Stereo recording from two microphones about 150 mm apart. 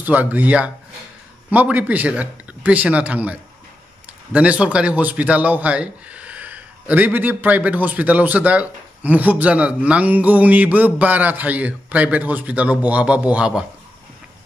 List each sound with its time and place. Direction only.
0.0 s a man's voice: 10° right (ahead or behind)